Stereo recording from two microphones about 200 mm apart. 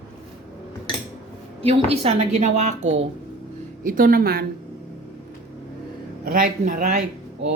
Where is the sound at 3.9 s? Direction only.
45° right (ahead or behind).